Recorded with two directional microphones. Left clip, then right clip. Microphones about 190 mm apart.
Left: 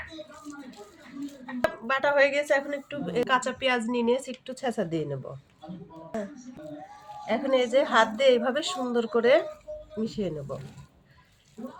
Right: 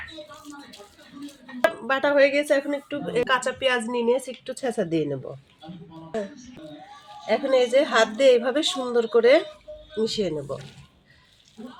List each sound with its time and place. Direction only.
0.5 s a sound: 10° left (ahead or behind)
1.9 s a woman's voice: 35° right (ahead or behind)
7.3 s a woman's voice: 40° right (ahead or behind)